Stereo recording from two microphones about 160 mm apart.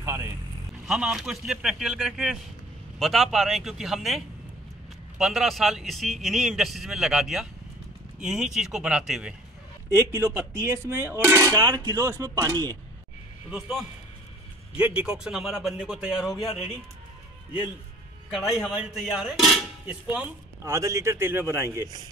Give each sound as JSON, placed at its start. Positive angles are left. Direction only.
{"t": 0.0, "sound": "vehicle", "side_deg": -15}
{"t": 0.8, "sound": "a man's voice", "side_deg": -5}
{"t": 5.2, "sound": "a man's voice", "side_deg": 0}
{"t": 9.8, "sound": "speech", "side_deg": -15}
{"t": 13.5, "sound": "a man's voice", "side_deg": -5}
{"t": 18.3, "sound": "a man's voice", "side_deg": 0}